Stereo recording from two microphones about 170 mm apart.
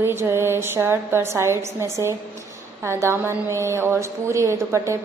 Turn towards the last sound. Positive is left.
turn(degrees=-15)  # may be behind; listen again after turning